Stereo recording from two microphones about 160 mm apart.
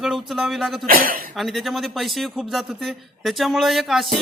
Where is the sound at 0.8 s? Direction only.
60° right (ahead or behind).